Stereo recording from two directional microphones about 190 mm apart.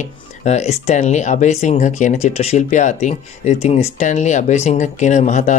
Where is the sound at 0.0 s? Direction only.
35° left (ahead or behind).